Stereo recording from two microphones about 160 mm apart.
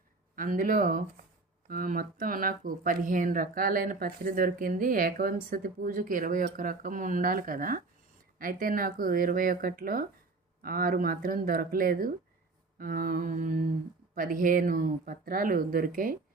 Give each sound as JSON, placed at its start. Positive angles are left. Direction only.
{"t": 0.3, "sound": "speech", "side_deg": -55}